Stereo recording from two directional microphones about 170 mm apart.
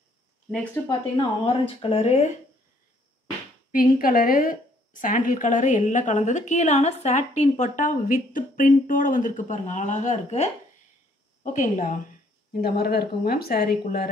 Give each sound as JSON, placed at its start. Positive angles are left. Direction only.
{"t": 1.1, "sound": "speech", "side_deg": 35}
{"t": 3.7, "sound": "a woman's voice", "side_deg": 55}
{"t": 12.5, "sound": "speech", "side_deg": 65}